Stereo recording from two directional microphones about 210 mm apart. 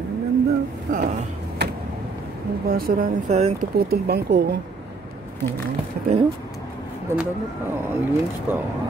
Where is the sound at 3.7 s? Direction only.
50° right (ahead or behind).